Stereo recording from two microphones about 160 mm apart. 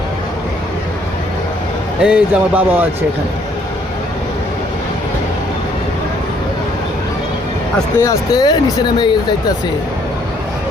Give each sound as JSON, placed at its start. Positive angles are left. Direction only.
{"t": 2.0, "sound": "speech", "side_deg": -5}
{"t": 8.0, "sound": "speech", "side_deg": 25}